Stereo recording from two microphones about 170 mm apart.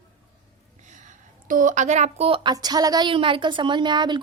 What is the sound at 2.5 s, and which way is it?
A woman's voice, 25° right (ahead or behind).